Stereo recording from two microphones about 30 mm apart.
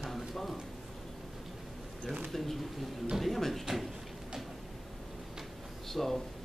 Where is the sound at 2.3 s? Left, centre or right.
Centre.